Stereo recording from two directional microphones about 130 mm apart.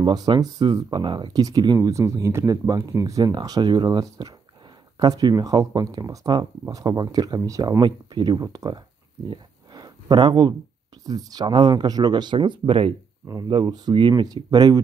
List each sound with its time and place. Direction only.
0.0 s speech: 35° right (ahead or behind)
9.3 s a sound: 35° right (ahead or behind)
11.1 s speech: 30° right (ahead or behind)
13.3 s speech: 30° right (ahead or behind)